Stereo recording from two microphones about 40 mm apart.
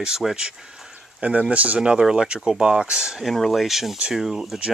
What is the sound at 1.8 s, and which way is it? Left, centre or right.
Speech, centre.